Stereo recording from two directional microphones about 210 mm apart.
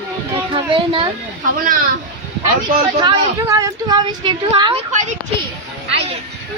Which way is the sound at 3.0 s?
20° right (ahead or behind).